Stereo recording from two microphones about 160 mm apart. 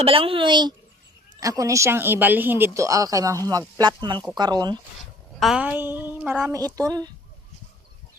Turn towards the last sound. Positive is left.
turn(degrees=-25)  # may be behind; listen again after turning